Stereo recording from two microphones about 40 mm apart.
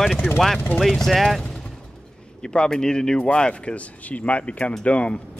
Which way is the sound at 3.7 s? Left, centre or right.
Left.